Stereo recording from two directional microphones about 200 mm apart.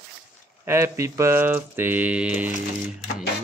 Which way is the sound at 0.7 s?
15° right (ahead or behind).